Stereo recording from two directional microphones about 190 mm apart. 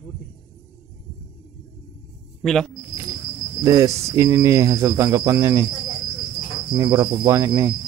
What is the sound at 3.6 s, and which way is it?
Speech, 15° right (ahead or behind).